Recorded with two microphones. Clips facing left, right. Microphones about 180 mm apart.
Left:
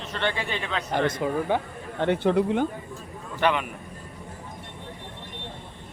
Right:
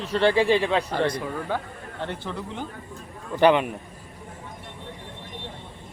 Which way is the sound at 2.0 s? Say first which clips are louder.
Left 11 dB; 60° left (ahead or behind).